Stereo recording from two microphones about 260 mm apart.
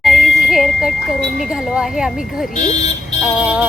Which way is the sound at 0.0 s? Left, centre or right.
Centre.